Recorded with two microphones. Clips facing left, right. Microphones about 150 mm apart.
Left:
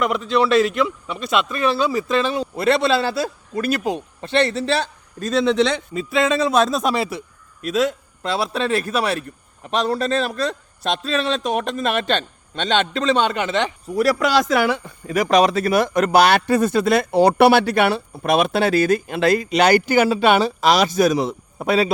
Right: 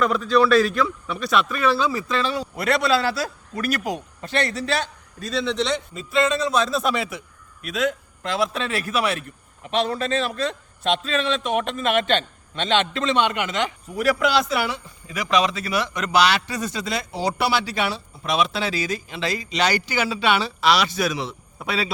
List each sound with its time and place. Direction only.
0.0 s a man's voice: 20° left (ahead or behind)
6.6 s speech: 50° left (ahead or behind)
6.9 s a man's voice: 35° left (ahead or behind)
14.6 s speech: 60° left (ahead or behind)